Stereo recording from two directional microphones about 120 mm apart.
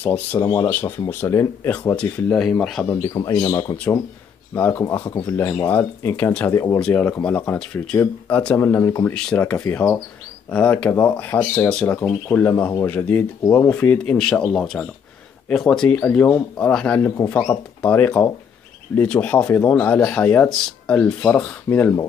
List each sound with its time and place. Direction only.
0.0 s speech: 15° left (ahead or behind)
2.8 s speech: 20° left (ahead or behind)
3.1 s speech: 30° left (ahead or behind)
4.6 s speech: 20° left (ahead or behind)
6.8 s speech: 10° left (ahead or behind)
8.5 s speech: 20° left (ahead or behind)
9.1 s speech: 10° left (ahead or behind)
17.0 s speech: 20° left (ahead or behind)